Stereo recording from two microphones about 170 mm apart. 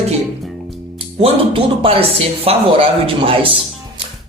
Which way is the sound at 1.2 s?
35° right (ahead or behind).